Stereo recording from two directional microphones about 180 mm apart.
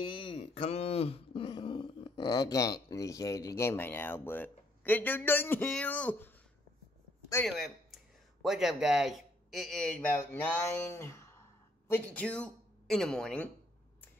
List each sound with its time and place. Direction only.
0.0 s speech: 30° left (ahead or behind); by 6.3 s 10° left (ahead or behind)
7.4 s a woman's voice: centre (ahead or behind)